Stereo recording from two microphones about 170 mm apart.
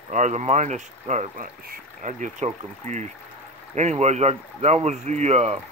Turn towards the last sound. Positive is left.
turn(degrees=-40)  # may be behind; listen again after turning